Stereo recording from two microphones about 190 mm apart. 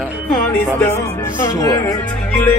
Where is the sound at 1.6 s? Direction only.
15° left (ahead or behind).